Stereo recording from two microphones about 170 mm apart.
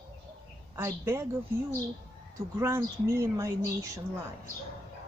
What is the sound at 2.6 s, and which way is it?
Speech, 15° right (ahead or behind).